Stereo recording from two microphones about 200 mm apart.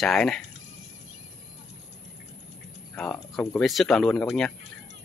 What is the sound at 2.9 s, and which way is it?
Speech, 5° left (ahead or behind).